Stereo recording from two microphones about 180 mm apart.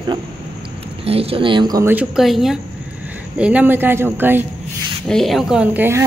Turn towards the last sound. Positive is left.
turn(degrees=-15)  # may be behind; listen again after turning